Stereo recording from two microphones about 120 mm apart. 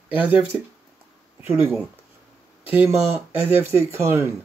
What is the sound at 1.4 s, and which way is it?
Speech, 20° right (ahead or behind).